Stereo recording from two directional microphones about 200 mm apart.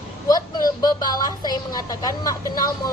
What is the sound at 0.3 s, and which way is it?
A woman's voice, 20° left (ahead or behind).